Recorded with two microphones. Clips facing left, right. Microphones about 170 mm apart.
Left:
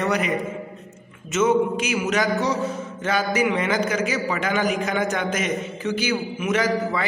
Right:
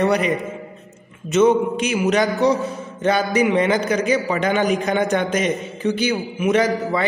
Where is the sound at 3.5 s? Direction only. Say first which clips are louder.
Right 4 dB; 30° right (ahead or behind).